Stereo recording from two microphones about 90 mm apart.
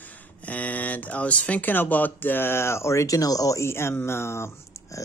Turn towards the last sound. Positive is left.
turn(degrees=30)  # may be behind; listen again after turning